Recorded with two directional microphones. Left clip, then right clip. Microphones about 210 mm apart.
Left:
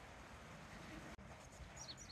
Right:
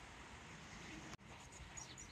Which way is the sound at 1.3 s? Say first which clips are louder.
Right 2 dB; 55° left (ahead or behind).